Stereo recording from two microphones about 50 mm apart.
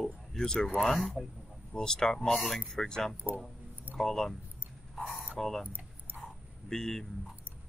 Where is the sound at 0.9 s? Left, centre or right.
Centre.